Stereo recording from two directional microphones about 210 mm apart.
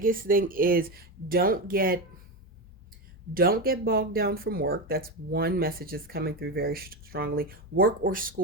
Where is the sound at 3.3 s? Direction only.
45° right (ahead or behind).